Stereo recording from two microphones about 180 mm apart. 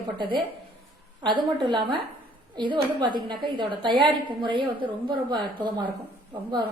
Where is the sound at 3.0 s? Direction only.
25° right (ahead or behind).